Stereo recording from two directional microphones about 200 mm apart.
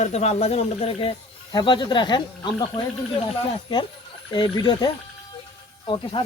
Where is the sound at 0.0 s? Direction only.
35° left (ahead or behind).